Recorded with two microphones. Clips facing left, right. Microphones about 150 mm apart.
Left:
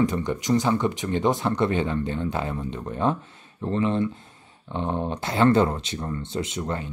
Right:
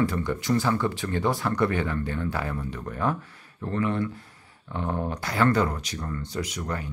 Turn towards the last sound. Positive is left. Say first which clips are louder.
# left 3 dB
turn(degrees=25)  # may be behind; listen again after turning